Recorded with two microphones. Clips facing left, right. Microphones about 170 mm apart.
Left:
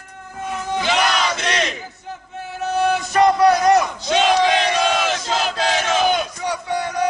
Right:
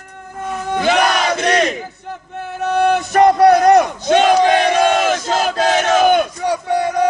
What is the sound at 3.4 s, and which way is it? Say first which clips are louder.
Battle cry: right 4 dB; 55° right (ahead or behind).